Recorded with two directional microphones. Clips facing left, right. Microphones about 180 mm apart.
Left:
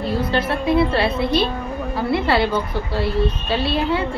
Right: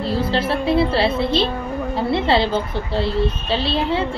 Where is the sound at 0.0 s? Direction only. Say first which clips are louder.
Even; 30° right (ahead or behind).